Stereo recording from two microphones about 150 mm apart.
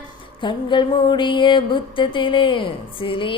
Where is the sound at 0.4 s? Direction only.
30° left (ahead or behind).